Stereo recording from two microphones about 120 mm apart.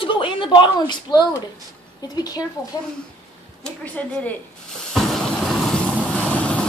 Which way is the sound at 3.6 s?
10° left (ahead or behind).